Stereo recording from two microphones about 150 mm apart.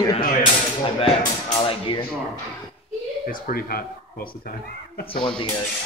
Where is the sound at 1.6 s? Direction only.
35° left (ahead or behind).